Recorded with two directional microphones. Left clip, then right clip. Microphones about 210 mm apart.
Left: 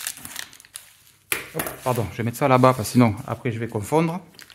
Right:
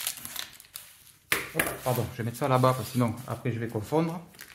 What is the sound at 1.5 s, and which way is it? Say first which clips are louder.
Speech: left 3 dB; 50° left (ahead or behind).